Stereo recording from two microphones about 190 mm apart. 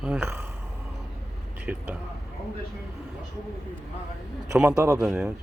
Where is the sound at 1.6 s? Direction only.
10° right (ahead or behind).